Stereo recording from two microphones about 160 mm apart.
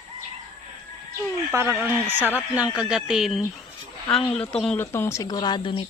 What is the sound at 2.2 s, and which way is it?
Speech, 10° left (ahead or behind).